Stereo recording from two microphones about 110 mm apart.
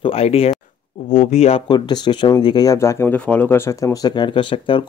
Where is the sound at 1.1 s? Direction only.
85° left.